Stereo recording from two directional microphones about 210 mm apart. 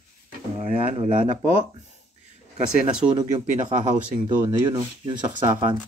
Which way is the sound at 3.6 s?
35° right (ahead or behind).